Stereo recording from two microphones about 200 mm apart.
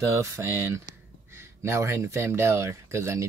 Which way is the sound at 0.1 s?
15° right (ahead or behind).